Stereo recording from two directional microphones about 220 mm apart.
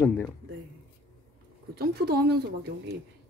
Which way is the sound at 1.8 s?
45° right (ahead or behind).